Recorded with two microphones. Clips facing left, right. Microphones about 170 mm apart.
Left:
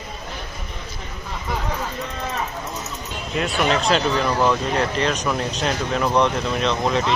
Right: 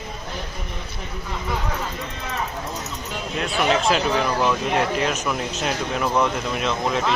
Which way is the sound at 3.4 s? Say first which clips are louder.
Even; 5° right (ahead or behind).